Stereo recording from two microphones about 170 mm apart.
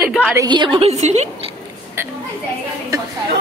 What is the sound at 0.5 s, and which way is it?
Speech, 30° right (ahead or behind).